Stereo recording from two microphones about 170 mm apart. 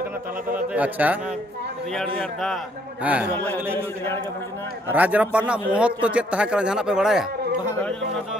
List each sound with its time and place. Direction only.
0.5 s a man's voice: 10° right (ahead or behind)
2.1 s a man's voice: centre (ahead or behind)
3.7 s a man's voice: 15° left (ahead or behind)
4.8 s a man's voice: 10° right (ahead or behind)